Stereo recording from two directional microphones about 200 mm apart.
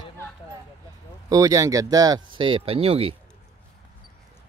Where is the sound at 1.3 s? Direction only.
15° right (ahead or behind).